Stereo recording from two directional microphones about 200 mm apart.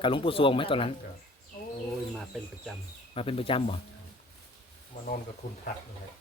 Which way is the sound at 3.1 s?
30° left (ahead or behind).